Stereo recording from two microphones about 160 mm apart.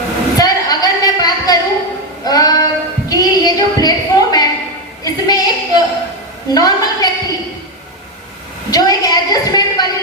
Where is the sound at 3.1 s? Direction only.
25° left (ahead or behind).